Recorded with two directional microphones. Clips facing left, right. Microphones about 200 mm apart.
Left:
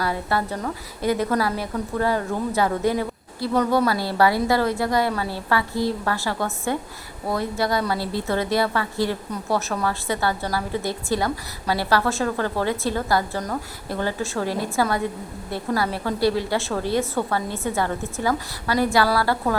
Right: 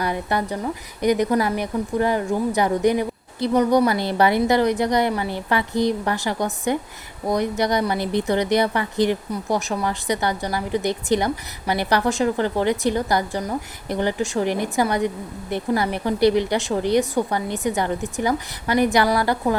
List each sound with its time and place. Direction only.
0.0 s speech: 20° right (ahead or behind)